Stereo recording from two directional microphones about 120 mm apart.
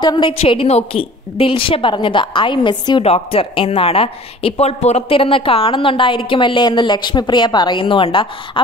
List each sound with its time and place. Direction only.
0.0 s a woman's voice: 40° left (ahead or behind)
0.4 s a woman's voice: 55° left (ahead or behind)
3.0 s a woman's voice: 55° left (ahead or behind)